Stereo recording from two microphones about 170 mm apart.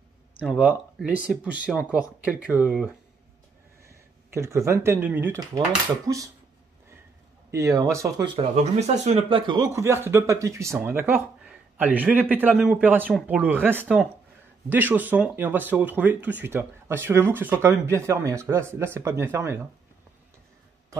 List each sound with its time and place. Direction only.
0.6 s speech: 5° right (ahead or behind)
3.8 s speech: 15° right (ahead or behind)
7.5 s speech: 20° right (ahead or behind)
8.4 s speech: 40° right (ahead or behind)
9.3 s speech: 25° right (ahead or behind)